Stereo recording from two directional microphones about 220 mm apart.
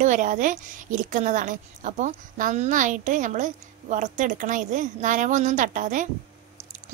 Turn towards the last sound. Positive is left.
turn(degrees=-35)  # may be behind; listen again after turning